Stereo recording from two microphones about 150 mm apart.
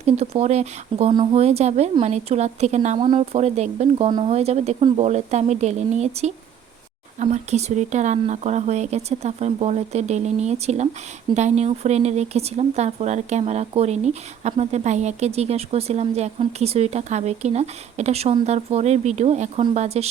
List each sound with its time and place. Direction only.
0.0 s speech: 45° right (ahead or behind)